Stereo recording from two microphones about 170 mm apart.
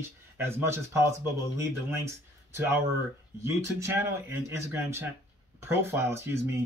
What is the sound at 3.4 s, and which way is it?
Speech, 15° right (ahead or behind).